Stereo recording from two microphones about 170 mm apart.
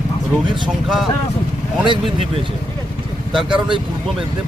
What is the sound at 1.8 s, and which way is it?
Speech, 30° right (ahead or behind).